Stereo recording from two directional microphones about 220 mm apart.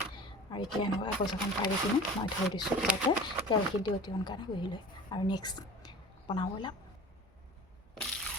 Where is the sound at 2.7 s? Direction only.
5° right (ahead or behind).